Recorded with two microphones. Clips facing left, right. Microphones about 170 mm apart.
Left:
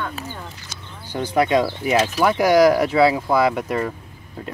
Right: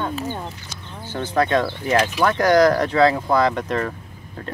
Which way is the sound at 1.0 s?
15° left (ahead or behind).